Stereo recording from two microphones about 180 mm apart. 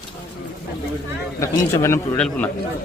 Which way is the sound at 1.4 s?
15° left (ahead or behind).